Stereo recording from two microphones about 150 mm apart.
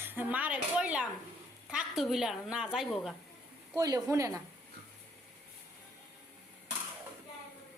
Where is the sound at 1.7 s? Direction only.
5° right (ahead or behind).